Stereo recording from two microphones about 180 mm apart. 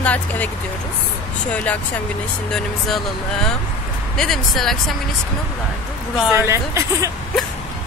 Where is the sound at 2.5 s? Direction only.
Centre (ahead or behind).